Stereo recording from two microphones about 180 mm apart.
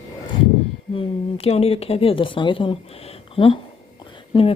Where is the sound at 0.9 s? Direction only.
30° left (ahead or behind).